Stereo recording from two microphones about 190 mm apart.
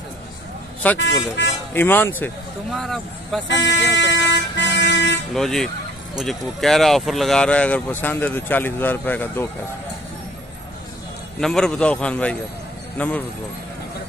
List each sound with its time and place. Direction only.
0.9 s speech: 70° left (ahead or behind)
1.7 s a man's voice: 10° left (ahead or behind)
3.4 s vehicle: 70° left (ahead or behind)
5.3 s a man's voice: centre (ahead or behind)
11.4 s a man's voice: 5° left (ahead or behind)